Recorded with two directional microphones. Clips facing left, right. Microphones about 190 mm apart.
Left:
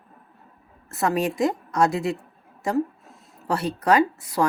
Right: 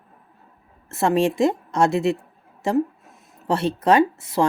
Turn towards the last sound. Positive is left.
turn(degrees=-25)  # may be behind; listen again after turning